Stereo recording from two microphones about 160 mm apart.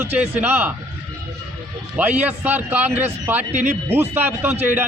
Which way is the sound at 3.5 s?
45° right (ahead or behind).